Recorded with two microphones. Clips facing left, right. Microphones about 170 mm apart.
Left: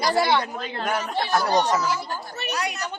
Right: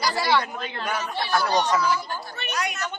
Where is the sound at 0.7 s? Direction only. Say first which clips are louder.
Left 3 dB; 50° left (ahead or behind).